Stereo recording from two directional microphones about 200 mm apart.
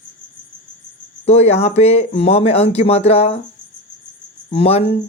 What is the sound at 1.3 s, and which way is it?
Speech, 35° left (ahead or behind).